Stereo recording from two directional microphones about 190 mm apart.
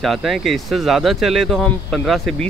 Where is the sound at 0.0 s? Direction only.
Centre (ahead or behind).